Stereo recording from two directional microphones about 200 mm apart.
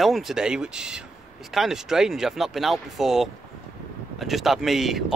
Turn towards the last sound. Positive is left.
turn(degrees=0)  # may be behind; listen again after turning